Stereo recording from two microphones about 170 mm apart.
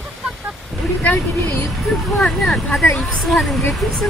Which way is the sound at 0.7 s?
Centre (ahead or behind).